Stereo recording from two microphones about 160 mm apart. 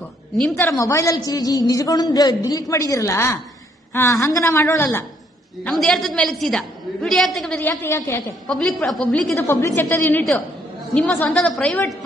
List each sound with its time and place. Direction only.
0.4 s a woman's voice: 15° left (ahead or behind)
5.6 s a woman's voice: 5° left (ahead or behind)
8.5 s a woman's voice: 5° left (ahead or behind)
9.3 s a woman's voice: 15° left (ahead or behind)